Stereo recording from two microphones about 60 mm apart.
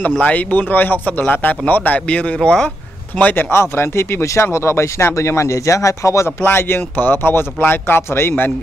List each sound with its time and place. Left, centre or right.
0.2 s speech: left
3.2 s speech: left
6.4 s speech: left